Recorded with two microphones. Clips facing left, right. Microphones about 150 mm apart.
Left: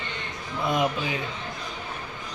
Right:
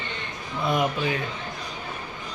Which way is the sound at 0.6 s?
20° left (ahead or behind).